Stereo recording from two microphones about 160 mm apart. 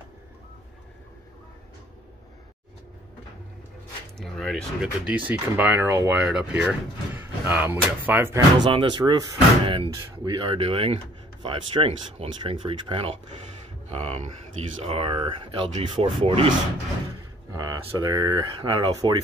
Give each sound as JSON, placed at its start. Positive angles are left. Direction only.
{"t": 4.2, "sound": "speech", "side_deg": 5}
{"t": 5.0, "sound": "speech", "side_deg": -10}
{"t": 8.5, "sound": "speech", "side_deg": -30}
{"t": 17.5, "sound": "speech", "side_deg": -25}